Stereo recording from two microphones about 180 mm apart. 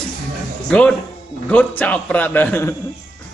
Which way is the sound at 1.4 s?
5° left (ahead or behind).